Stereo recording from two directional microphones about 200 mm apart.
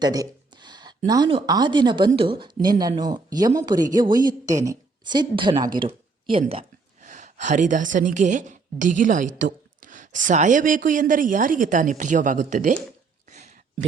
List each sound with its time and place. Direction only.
0.0 s speech: 20° right (ahead or behind)
6.4 s speech: 35° right (ahead or behind)